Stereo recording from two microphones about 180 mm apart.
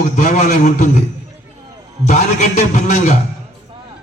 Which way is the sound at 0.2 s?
40° left (ahead or behind).